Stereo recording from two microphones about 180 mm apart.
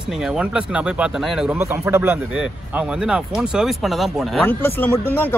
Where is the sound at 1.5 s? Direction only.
15° right (ahead or behind).